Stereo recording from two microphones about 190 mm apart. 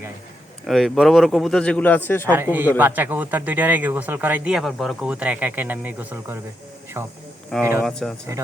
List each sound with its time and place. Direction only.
0.7 s speech: centre (ahead or behind)
2.3 s speech: 10° right (ahead or behind)
7.8 s speech: centre (ahead or behind)